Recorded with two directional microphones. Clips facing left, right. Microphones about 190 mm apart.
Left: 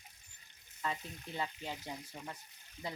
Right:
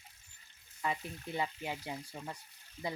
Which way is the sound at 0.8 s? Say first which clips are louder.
Right 3 dB; 15° right (ahead or behind).